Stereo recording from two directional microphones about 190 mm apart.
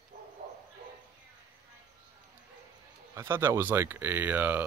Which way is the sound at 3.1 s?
15° right (ahead or behind).